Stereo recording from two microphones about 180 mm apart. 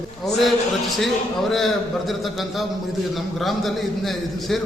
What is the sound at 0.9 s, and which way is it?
A man's voice, centre (ahead or behind).